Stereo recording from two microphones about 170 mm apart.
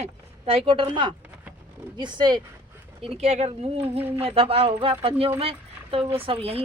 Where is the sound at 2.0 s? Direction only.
25° right (ahead or behind).